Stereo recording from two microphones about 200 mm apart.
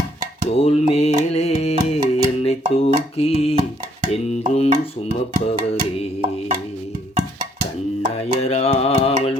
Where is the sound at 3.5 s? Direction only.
35° right (ahead or behind).